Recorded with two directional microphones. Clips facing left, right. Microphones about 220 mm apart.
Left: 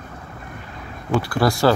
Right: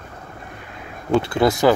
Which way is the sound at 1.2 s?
20° right (ahead or behind).